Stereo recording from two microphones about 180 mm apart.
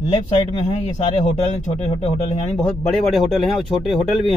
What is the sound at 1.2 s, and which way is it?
Speech, 40° left (ahead or behind).